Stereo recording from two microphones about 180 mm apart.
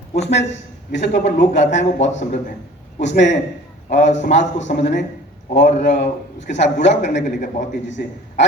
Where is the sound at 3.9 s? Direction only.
40° left (ahead or behind).